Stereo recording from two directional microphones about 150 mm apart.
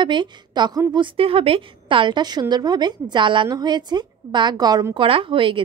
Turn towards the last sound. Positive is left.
turn(degrees=-35)  # may be behind; listen again after turning